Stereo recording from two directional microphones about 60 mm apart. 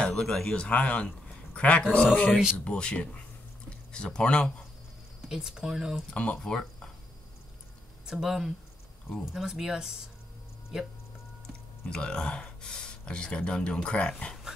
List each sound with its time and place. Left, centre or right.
0.0 s speech: centre
5.3 s speech: centre
6.1 s speech: left
8.1 s speech: centre
11.8 s speech: centre